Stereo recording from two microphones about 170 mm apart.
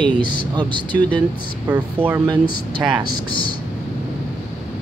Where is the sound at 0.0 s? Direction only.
25° right (ahead or behind).